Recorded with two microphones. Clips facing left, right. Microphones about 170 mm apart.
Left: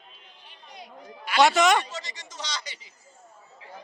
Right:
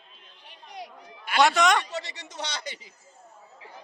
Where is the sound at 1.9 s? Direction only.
65° right (ahead or behind).